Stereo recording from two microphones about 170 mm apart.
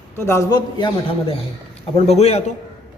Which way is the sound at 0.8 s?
30° left (ahead or behind).